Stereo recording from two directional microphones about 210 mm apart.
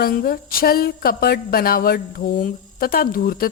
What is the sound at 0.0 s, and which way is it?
Speech, 45° left (ahead or behind).